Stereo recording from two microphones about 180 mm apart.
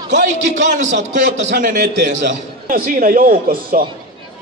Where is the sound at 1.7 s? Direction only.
50° right (ahead or behind).